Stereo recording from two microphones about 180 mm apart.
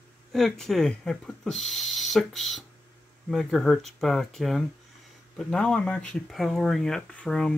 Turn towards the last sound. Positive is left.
turn(degrees=5)  # may be behind; listen again after turning